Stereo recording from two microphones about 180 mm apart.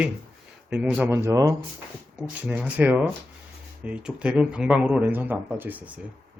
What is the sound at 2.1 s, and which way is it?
Speech, 10° right (ahead or behind).